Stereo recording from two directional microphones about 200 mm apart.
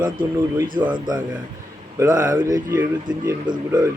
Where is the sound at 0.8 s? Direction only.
25° right (ahead or behind).